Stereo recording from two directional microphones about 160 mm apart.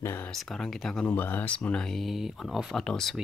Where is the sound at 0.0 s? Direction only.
15° left (ahead or behind).